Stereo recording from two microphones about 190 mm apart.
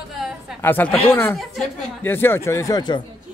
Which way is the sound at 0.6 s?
10° left (ahead or behind).